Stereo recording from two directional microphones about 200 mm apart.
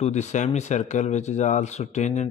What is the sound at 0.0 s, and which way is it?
A man's voice, 35° left (ahead or behind).